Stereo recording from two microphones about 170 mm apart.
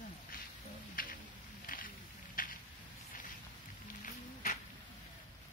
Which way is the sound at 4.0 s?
50° left (ahead or behind).